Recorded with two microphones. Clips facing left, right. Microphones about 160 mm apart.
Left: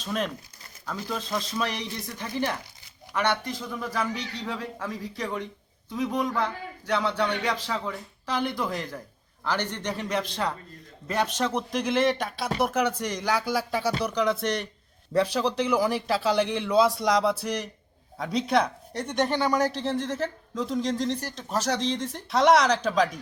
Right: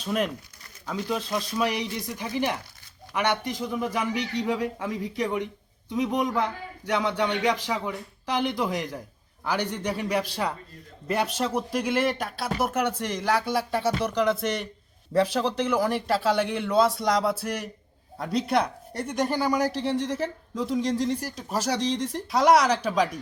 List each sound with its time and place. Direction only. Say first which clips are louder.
0.0 s speech: right 3 dB; 10° right (ahead or behind)